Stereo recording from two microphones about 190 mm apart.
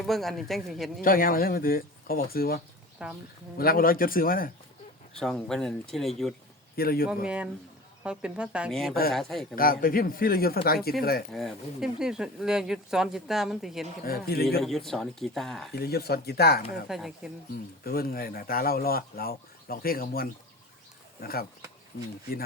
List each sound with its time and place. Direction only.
0.0 s speech: centre (ahead or behind)
1.0 s speech: 50° left (ahead or behind)
3.0 s speech: 5° right (ahead or behind)
3.6 s speech: 50° left (ahead or behind)
5.2 s speech: 5° left (ahead or behind)
6.7 s speech: 50° left (ahead or behind)
7.3 s speech: 5° right (ahead or behind)
9.6 s speech: 50° left (ahead or behind)
11.3 s speech: centre (ahead or behind)
14.0 s speech: 55° left (ahead or behind)
14.6 s speech: centre (ahead or behind)
15.7 s speech: 55° left (ahead or behind)
16.9 s speech: centre (ahead or behind)
17.5 s speech: 50° left (ahead or behind)